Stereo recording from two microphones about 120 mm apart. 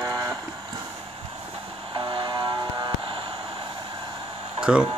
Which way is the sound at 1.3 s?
50° right (ahead or behind).